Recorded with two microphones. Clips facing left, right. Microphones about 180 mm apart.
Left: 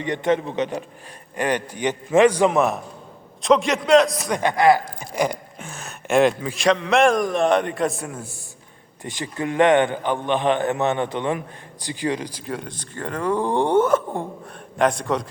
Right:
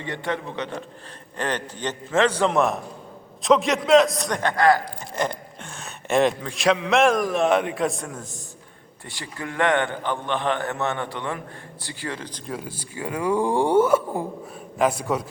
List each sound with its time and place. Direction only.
0.0 s a man's voice: 20° left (ahead or behind)
2.5 s speech: centre (ahead or behind)
4.3 s speech: 15° left (ahead or behind)
9.0 s a man's voice: 20° left (ahead or behind)
12.5 s speech: 5° right (ahead or behind)